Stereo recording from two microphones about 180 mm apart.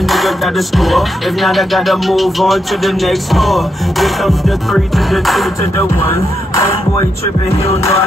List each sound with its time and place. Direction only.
0.0 s music: centre (ahead or behind)
7.4 s music: 35° left (ahead or behind)